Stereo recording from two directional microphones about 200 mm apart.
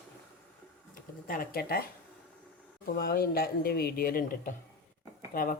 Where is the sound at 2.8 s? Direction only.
50° left (ahead or behind).